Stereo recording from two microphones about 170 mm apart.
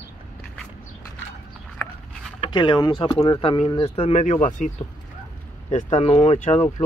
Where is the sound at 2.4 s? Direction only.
30° left (ahead or behind); by 4.7 s 45° left (ahead or behind).